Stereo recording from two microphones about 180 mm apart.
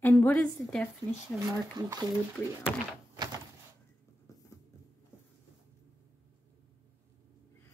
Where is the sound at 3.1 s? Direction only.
20° right (ahead or behind).